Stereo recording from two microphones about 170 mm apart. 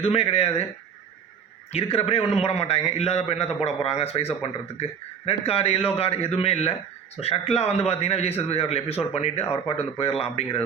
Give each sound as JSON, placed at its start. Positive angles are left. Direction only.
{"t": 0.0, "sound": "a man's voice", "side_deg": 35}
{"t": 1.7, "sound": "a man's voice", "side_deg": 35}